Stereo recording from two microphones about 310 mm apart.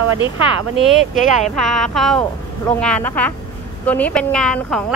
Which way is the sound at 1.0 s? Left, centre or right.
Left.